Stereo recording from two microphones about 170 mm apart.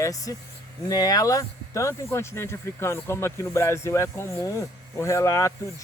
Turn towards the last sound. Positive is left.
turn(degrees=20)  # may be behind; listen again after turning